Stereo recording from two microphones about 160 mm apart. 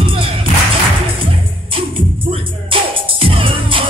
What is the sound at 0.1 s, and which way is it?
Music, 35° right (ahead or behind).